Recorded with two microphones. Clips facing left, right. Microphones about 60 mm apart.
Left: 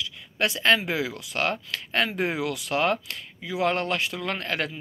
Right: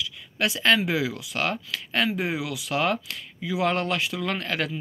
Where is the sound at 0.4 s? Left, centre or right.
Left.